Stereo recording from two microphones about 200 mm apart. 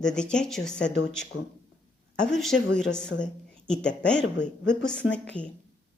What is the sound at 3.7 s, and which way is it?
A woman's voice, 5° left (ahead or behind).